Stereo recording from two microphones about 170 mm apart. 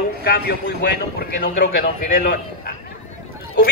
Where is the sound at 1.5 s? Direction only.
55° left (ahead or behind).